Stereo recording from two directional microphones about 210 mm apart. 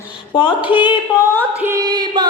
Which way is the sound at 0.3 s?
25° left (ahead or behind).